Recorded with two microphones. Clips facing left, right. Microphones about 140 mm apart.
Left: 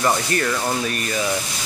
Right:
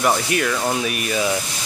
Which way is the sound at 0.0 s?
10° right (ahead or behind).